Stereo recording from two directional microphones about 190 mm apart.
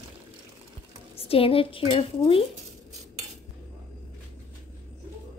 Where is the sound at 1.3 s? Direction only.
30° left (ahead or behind).